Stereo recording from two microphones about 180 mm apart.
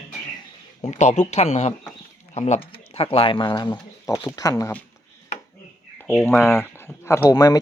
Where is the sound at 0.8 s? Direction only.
40° left (ahead or behind); by 4.8 s 15° left (ahead or behind).